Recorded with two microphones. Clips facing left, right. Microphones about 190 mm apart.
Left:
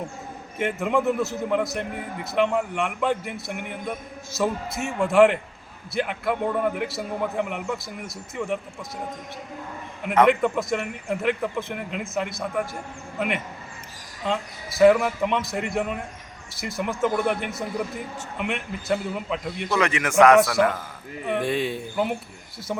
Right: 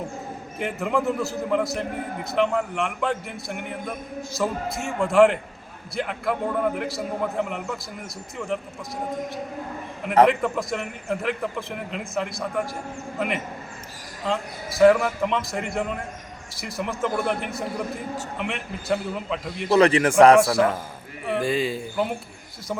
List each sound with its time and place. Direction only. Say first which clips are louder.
0.6 s a man's voice: left 2 dB; centre (ahead or behind)
10.2 s a man's voice: left 2 dB; centre (ahead or behind)
14.8 s a man's voice: even; centre (ahead or behind)
19.7 s speech: right 5 dB; 35° right (ahead or behind)
21.2 s a man's voice: right 1 dB; centre (ahead or behind)